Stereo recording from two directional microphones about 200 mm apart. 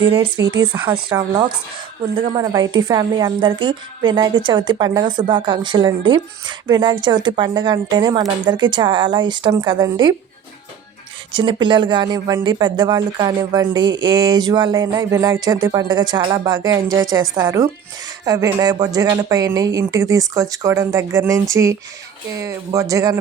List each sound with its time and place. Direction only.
0.0 s a woman's voice: 25° right (ahead or behind)
11.3 s a woman's voice: 25° right (ahead or behind)